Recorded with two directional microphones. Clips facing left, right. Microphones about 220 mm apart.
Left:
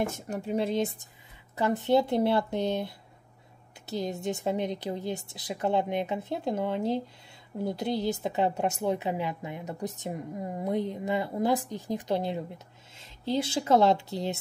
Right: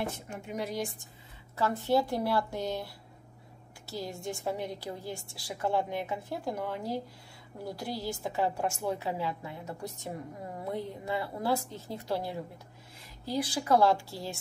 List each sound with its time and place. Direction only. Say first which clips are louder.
0.0 s a woman's voice: left 5 dB; 40° left (ahead or behind); by 14.3 s 20° left (ahead or behind)